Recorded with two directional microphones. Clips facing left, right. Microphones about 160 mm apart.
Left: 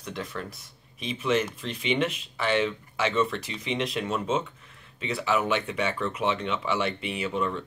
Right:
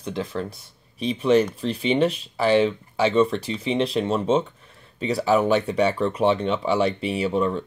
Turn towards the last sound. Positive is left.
turn(degrees=-35)  # may be behind; listen again after turning